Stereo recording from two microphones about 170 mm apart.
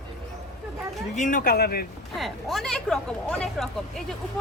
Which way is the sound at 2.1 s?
Centre (ahead or behind).